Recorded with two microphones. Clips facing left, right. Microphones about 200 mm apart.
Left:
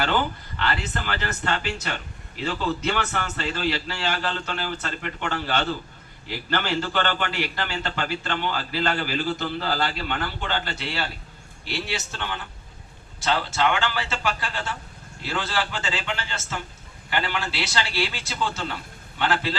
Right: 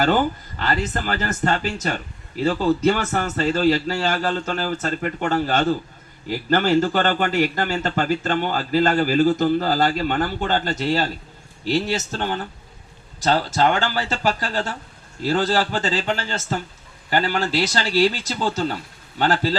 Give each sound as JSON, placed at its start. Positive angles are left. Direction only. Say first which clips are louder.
{"t": 0.0, "sound": "a man's voice", "louder": "right 6 dB", "side_deg": -45}